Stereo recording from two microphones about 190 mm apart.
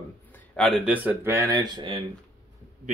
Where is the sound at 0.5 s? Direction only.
Centre (ahead or behind); by 2.0 s 25° right (ahead or behind).